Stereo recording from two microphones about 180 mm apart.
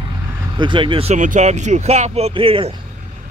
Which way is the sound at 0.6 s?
25° right (ahead or behind).